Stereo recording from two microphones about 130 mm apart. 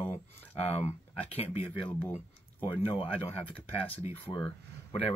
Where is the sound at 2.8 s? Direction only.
50° left (ahead or behind).